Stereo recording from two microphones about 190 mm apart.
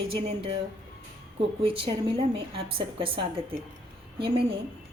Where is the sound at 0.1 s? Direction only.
30° right (ahead or behind).